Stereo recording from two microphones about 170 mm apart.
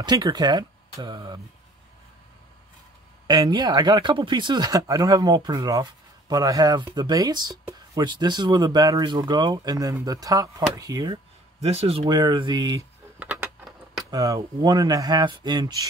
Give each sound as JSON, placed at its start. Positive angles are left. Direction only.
{"t": 0.0, "sound": "speech", "side_deg": -25}
{"t": 3.3, "sound": "speech", "side_deg": -25}
{"t": 11.6, "sound": "speech", "side_deg": -35}
{"t": 12.2, "sound": "speech", "side_deg": -25}
{"t": 13.2, "sound": "a sound", "side_deg": -10}
{"t": 14.1, "sound": "speech", "side_deg": -20}